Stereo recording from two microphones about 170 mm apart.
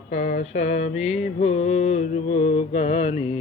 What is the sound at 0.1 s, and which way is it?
Mantra, 50° left (ahead or behind).